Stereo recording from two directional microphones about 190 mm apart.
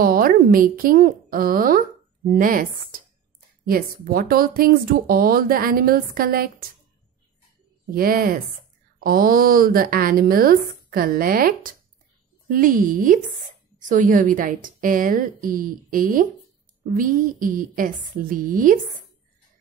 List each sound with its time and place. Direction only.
0.0 s a woman's voice: 50° right (ahead or behind)
7.9 s speech: 50° right (ahead or behind)